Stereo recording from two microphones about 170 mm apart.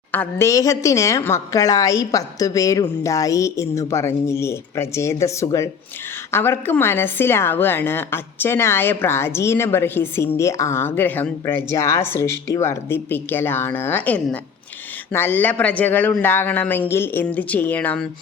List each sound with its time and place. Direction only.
0.1 s a woman's voice: 15° left (ahead or behind)